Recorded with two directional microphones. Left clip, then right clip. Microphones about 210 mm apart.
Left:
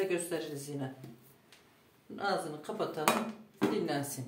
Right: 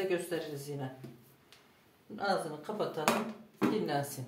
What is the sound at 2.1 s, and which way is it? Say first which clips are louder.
Speech: right 1 dB; 20° left (ahead or behind).